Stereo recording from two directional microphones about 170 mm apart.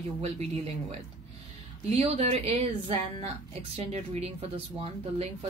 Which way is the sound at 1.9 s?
40° right (ahead or behind).